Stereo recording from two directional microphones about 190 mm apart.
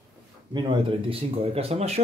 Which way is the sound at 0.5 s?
25° right (ahead or behind).